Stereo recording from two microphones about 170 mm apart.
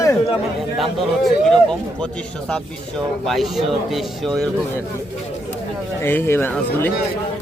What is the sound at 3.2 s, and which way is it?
A man's voice, centre (ahead or behind).